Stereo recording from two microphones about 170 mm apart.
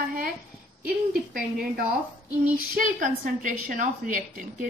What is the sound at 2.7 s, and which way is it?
A woman's voice, 50° right (ahead or behind).